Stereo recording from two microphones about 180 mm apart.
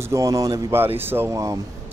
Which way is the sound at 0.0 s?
15° right (ahead or behind).